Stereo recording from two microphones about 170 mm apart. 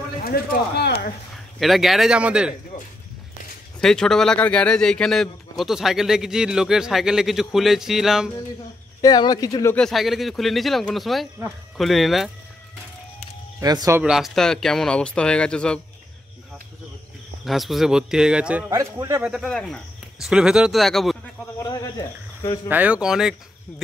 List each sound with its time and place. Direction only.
0.2 s speech: 60° left (ahead or behind)
1.6 s a man's voice: centre (ahead or behind)
2.7 s a sound: 35° left (ahead or behind)
3.8 s a man's voice: 5° left (ahead or behind)
9.0 s speech: 25° left (ahead or behind)
9.8 s a man's voice: centre (ahead or behind)
13.6 s speech: 20° right (ahead or behind)
13.9 s a man's voice: 5° right (ahead or behind)
17.5 s a man's voice: centre (ahead or behind)
18.7 s speech: 20° right (ahead or behind)
19.2 s a man's voice: centre (ahead or behind)
21.5 s cricket: 20° left (ahead or behind)
22.7 s a man's voice: 10° right (ahead or behind)